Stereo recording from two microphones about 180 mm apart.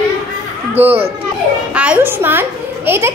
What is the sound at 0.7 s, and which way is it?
Speech, 35° right (ahead or behind).